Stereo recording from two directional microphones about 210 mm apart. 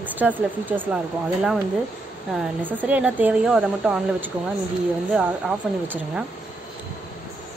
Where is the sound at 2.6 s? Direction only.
5° right (ahead or behind).